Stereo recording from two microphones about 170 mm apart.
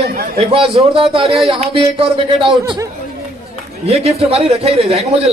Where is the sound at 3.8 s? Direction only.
35° right (ahead or behind).